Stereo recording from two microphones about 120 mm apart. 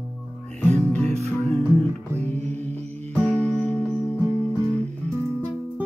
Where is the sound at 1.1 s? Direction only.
60° right (ahead or behind).